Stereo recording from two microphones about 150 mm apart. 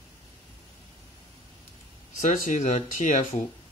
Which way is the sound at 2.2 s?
50° left (ahead or behind).